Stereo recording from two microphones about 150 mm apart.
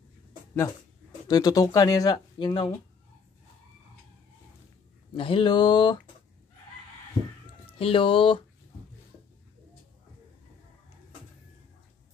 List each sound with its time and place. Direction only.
1.2 s speech: 25° left (ahead or behind)
5.1 s speech: 35° left (ahead or behind)
7.8 s speech: 35° left (ahead or behind)